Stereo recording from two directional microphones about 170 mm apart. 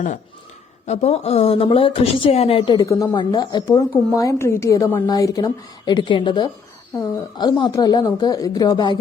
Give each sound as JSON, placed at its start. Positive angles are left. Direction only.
{"t": 0.9, "sound": "speech", "side_deg": 40}
{"t": 2.8, "sound": "speech", "side_deg": 20}